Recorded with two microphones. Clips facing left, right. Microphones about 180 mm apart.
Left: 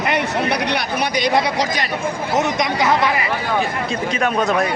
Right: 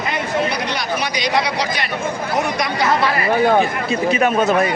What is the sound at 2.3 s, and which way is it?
Speech, 20° left (ahead or behind).